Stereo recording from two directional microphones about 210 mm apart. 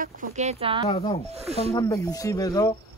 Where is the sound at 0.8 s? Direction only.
30° left (ahead or behind).